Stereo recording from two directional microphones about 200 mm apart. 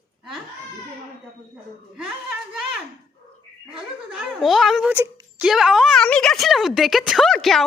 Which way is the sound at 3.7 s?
Centre (ahead or behind).